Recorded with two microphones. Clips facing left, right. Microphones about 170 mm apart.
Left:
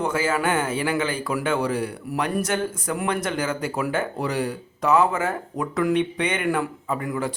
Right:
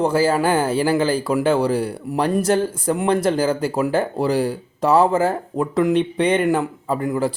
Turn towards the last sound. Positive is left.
turn(degrees=-30)  # may be behind; listen again after turning